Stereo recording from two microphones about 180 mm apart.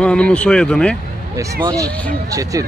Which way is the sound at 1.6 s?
20° right (ahead or behind).